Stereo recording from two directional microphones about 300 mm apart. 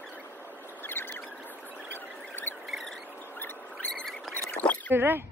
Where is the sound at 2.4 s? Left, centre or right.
Centre.